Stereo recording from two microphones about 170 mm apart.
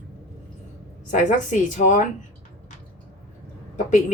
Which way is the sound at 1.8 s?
45° left (ahead or behind).